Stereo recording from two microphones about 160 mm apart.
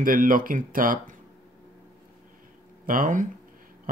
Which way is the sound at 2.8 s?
60° right (ahead or behind).